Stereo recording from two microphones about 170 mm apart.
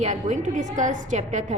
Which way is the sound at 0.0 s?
45° right (ahead or behind).